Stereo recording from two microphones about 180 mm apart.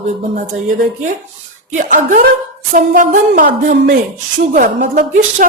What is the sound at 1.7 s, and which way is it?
A woman's voice, 45° right (ahead or behind).